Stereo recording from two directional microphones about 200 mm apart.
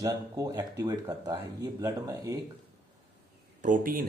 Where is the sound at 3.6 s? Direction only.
45° right (ahead or behind).